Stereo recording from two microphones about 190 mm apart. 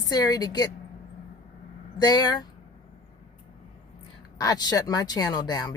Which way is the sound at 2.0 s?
20° left (ahead or behind).